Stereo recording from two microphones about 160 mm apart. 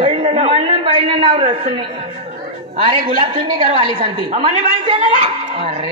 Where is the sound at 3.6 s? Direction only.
50° right (ahead or behind).